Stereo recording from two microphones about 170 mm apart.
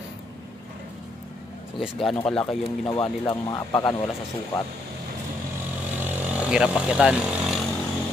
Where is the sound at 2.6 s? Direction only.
30° left (ahead or behind).